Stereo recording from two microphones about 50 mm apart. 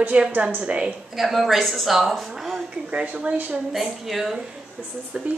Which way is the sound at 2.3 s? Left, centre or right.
Centre.